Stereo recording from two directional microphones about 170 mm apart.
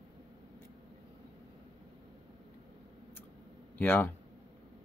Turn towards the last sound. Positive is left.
turn(degrees=10)  # may be behind; listen again after turning